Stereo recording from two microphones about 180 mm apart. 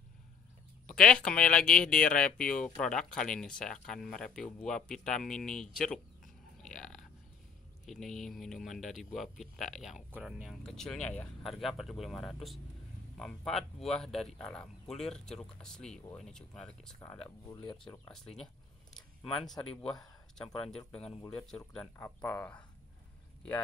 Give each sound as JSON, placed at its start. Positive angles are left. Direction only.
{"t": 0.8, "sound": "speech", "side_deg": 5}
{"t": 6.6, "sound": "a sound", "side_deg": 0}
{"t": 7.8, "sound": "speech", "side_deg": 0}
{"t": 17.5, "sound": "speech", "side_deg": 25}
{"t": 18.0, "sound": "speech", "side_deg": 5}
{"t": 18.9, "sound": "a sound", "side_deg": 5}
{"t": 20.3, "sound": "speech", "side_deg": 5}